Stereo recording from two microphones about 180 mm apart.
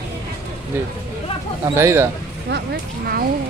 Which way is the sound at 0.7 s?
10° right (ahead or behind).